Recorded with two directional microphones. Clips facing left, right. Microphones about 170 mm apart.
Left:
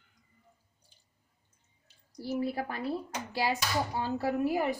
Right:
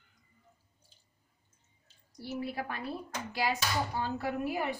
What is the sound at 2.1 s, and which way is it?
Speech, 35° left (ahead or behind).